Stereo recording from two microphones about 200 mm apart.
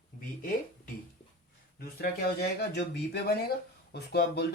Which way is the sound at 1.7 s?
50° left (ahead or behind).